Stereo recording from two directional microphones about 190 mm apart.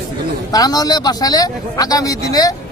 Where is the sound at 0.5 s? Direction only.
20° left (ahead or behind).